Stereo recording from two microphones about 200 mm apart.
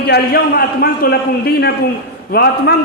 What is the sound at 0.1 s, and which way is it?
A man's voice, 50° left (ahead or behind).